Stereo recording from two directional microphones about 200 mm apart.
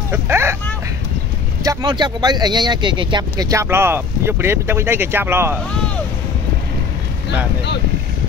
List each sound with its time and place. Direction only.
0.1 s vehicle: 10° right (ahead or behind)
1.6 s speech: 20° right (ahead or behind)